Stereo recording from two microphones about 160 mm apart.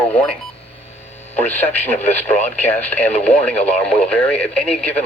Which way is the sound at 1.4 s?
10° left (ahead or behind).